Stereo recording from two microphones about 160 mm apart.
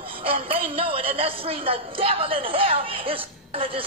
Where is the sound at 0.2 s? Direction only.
35° right (ahead or behind).